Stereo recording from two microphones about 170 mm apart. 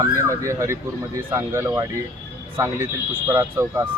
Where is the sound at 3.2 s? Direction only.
15° right (ahead or behind).